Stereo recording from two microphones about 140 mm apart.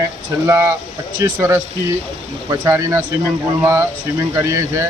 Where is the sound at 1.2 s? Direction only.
20° right (ahead or behind).